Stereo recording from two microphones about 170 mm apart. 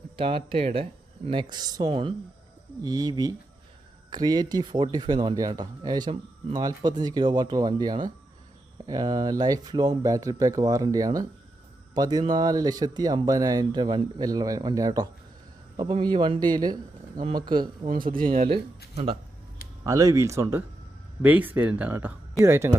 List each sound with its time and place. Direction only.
0.2 s speech: 30° right (ahead or behind)
17.9 s speech: 55° right (ahead or behind)
19.8 s speech: 20° right (ahead or behind)